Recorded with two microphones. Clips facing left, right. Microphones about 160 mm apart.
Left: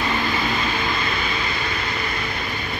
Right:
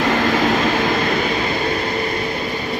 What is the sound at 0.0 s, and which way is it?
Vehicle, 90° right.